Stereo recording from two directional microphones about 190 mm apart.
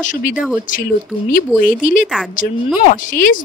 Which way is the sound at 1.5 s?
45° left (ahead or behind).